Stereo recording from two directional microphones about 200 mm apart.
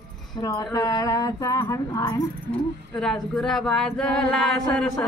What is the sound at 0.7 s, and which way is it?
Female singing, 15° left (ahead or behind).